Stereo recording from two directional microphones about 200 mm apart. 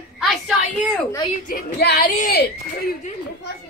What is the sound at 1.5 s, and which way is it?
Speech, 50° left (ahead or behind).